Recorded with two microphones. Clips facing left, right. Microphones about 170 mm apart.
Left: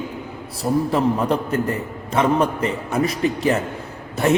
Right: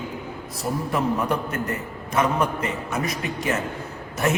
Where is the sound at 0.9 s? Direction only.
30° left (ahead or behind).